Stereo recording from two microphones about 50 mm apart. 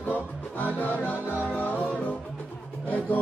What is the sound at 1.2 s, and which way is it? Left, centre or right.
Music, right.